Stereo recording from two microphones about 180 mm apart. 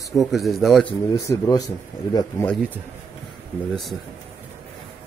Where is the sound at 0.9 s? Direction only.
20° left (ahead or behind).